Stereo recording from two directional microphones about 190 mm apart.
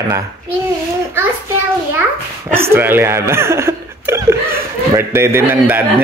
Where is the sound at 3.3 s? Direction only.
15° right (ahead or behind).